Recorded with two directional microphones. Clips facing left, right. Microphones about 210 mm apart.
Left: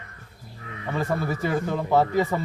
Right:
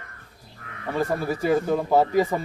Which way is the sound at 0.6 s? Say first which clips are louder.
Left 4 dB; 55° right (ahead or behind).